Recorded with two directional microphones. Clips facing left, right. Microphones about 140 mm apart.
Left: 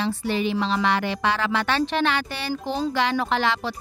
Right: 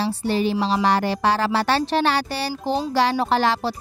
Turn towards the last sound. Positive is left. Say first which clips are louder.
# right 4 dB
turn(degrees=-35)  # may be behind; listen again after turning